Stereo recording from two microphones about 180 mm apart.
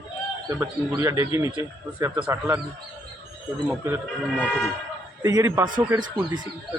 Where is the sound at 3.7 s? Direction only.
10° right (ahead or behind).